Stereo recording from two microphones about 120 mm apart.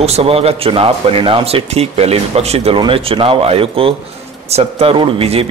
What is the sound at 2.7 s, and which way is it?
A man's voice, 45° right (ahead or behind).